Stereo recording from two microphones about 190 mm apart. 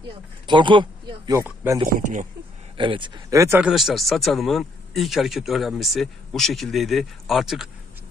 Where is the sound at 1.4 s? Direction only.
10° right (ahead or behind).